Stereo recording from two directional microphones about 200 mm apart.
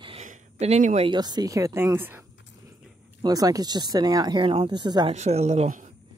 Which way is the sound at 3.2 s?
20° right (ahead or behind).